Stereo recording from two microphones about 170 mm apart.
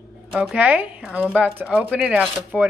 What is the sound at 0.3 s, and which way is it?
Speech, 5° right (ahead or behind).